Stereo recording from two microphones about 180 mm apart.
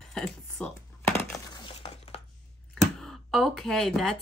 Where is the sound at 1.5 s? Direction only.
30° left (ahead or behind).